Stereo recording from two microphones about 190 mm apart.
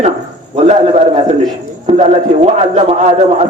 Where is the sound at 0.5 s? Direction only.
35° right (ahead or behind).